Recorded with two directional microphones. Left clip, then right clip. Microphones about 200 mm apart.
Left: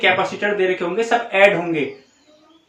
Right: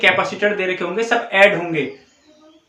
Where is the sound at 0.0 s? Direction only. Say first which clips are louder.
Right 2 dB; 30° right (ahead or behind).